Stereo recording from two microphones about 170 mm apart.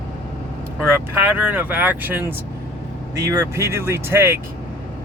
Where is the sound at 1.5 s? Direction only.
10° right (ahead or behind).